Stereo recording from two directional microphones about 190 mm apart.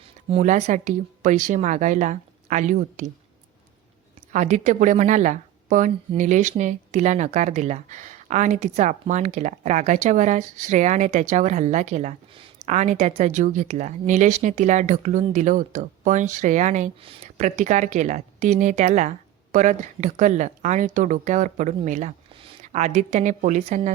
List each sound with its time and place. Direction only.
0.3 s a woman's voice: 35° right (ahead or behind)
4.3 s a woman's voice: 40° right (ahead or behind)